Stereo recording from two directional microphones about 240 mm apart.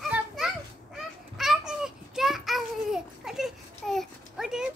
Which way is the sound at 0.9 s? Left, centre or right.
Centre.